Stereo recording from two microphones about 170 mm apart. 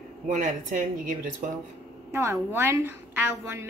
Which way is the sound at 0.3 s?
50° right (ahead or behind).